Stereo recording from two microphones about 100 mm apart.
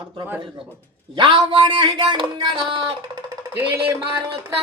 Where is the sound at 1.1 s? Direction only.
55° right (ahead or behind).